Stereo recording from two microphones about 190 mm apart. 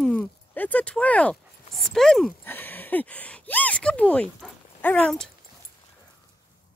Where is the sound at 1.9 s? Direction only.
Centre (ahead or behind).